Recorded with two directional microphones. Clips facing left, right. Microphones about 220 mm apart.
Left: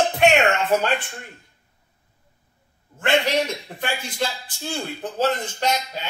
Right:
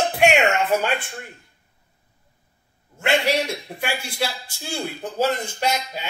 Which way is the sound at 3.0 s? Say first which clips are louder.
Even; 10° right (ahead or behind).